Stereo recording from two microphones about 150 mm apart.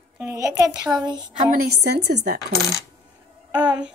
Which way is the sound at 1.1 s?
30° right (ahead or behind).